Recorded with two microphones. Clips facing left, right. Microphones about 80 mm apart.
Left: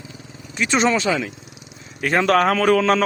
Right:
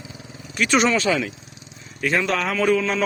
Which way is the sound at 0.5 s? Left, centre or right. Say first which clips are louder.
Even; left.